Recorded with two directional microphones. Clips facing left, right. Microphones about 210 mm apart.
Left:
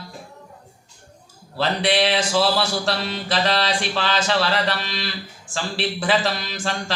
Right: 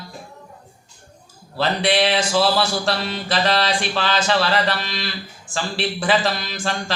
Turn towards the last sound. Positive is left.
turn(degrees=-50)  # may be behind; listen again after turning